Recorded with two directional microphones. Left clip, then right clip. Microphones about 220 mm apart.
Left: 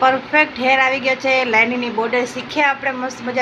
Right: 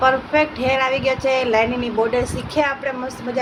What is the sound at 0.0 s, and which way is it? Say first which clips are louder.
Speech: left 2 dB; 10° left (ahead or behind).